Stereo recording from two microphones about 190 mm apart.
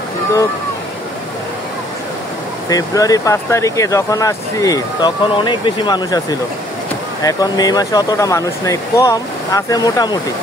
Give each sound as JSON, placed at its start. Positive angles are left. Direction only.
{"t": 2.7, "sound": "speech", "side_deg": 20}
{"t": 7.2, "sound": "speech", "side_deg": 20}